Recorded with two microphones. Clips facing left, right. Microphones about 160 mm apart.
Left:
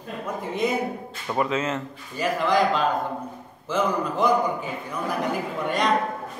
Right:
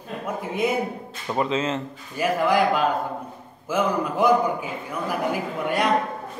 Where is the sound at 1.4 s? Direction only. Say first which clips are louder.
Right 1 dB; 25° right (ahead or behind).